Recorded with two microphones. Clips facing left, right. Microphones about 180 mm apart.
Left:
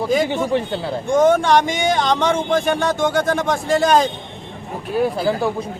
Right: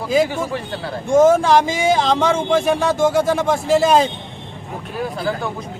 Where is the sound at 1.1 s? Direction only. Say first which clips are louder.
Right 2 dB; 5° right (ahead or behind).